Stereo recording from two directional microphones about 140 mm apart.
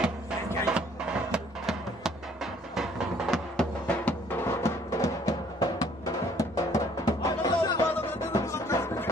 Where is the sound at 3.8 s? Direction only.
15° left (ahead or behind).